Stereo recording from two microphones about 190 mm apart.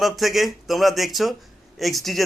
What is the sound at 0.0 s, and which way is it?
A man's voice, centre (ahead or behind).